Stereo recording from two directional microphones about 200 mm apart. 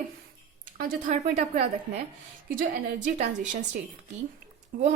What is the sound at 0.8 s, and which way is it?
Speech, 40° right (ahead or behind).